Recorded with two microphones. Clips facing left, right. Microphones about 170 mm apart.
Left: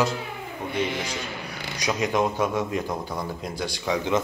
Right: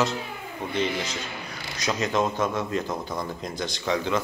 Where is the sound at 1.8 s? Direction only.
15° left (ahead or behind).